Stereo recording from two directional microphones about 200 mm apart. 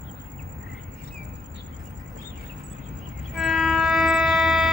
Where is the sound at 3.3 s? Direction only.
Centre (ahead or behind).